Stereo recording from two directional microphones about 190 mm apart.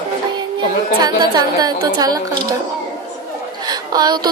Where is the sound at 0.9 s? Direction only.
20° right (ahead or behind).